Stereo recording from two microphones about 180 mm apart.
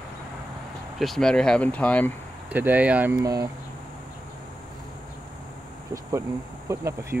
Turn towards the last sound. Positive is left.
turn(degrees=-15)  # may be behind; listen again after turning